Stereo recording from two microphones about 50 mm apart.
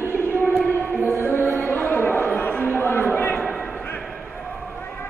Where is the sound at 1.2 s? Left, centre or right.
Left.